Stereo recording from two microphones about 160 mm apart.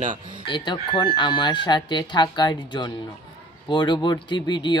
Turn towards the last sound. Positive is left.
turn(degrees=30)  # may be behind; listen again after turning